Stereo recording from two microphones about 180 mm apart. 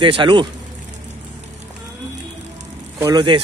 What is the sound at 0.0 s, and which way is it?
Speech, 25° right (ahead or behind).